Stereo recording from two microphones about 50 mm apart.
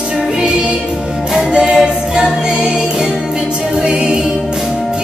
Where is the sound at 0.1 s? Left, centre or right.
Centre.